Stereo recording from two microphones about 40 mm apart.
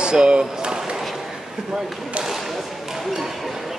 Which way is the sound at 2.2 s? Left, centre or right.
Centre.